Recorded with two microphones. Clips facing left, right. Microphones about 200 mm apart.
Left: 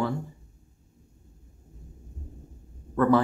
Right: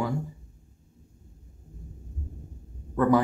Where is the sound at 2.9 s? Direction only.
15° right (ahead or behind).